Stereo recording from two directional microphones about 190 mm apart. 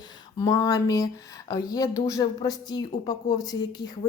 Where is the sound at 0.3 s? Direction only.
20° left (ahead or behind).